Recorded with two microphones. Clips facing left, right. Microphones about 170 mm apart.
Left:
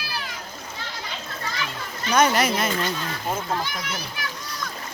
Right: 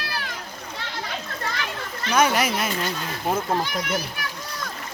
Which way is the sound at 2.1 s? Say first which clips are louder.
Left 1 dB; 10° right (ahead or behind).